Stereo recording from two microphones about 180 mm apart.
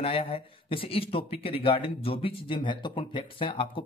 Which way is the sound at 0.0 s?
30° left (ahead or behind).